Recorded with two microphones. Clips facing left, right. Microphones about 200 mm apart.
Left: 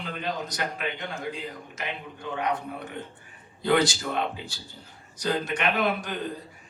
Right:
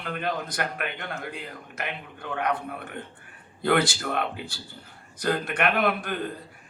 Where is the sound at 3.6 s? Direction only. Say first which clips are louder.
Even; 55° right (ahead or behind).